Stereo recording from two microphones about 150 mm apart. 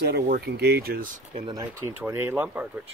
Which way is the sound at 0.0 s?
90° right.